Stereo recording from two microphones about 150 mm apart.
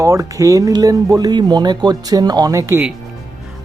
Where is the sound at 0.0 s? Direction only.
20° right (ahead or behind).